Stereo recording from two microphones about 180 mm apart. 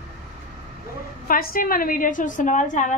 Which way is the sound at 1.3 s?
55° left (ahead or behind).